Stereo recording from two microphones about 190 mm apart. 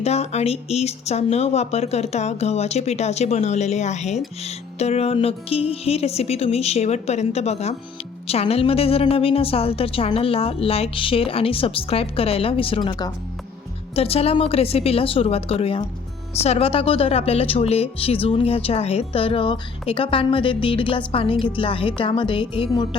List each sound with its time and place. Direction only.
0.0 s speech: 35° left (ahead or behind)